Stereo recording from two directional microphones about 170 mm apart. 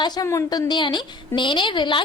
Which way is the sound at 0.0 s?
25° left (ahead or behind).